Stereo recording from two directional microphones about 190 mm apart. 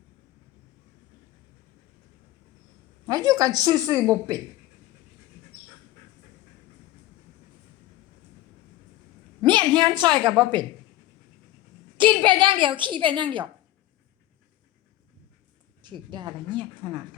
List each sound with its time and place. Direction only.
3.1 s a woman's voice: 20° right (ahead or behind)
9.4 s a sound: 25° right (ahead or behind)
11.9 s a woman's voice: 25° right (ahead or behind)
15.8 s a woman's voice: 25° right (ahead or behind)